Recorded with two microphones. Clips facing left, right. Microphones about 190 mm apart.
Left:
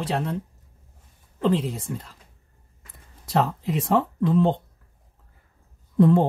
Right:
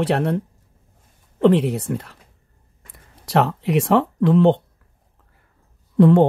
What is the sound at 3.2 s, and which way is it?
Speech, 80° right.